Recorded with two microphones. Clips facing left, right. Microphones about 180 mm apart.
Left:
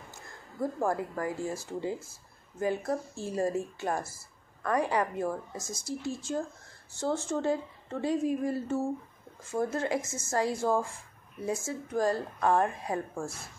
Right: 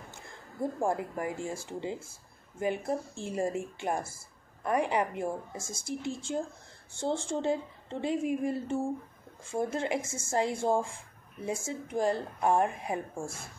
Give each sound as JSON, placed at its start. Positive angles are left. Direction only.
{"t": 0.8, "sound": "a woman's voice", "side_deg": -20}
{"t": 4.6, "sound": "a woman's voice", "side_deg": -20}